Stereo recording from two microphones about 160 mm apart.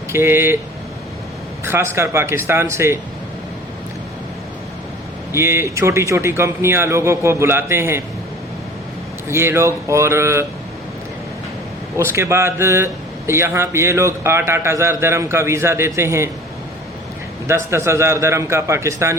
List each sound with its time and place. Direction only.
0.1 s a man's voice: 15° right (ahead or behind)
1.6 s a man's voice: 15° right (ahead or behind)
5.3 s a man's voice: 15° right (ahead or behind)
9.3 s a man's voice: 15° right (ahead or behind)
11.9 s a man's voice: 15° right (ahead or behind)
17.5 s a man's voice: 15° right (ahead or behind)